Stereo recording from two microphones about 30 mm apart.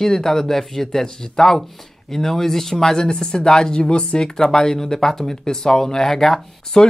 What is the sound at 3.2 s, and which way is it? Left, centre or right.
Speech, left.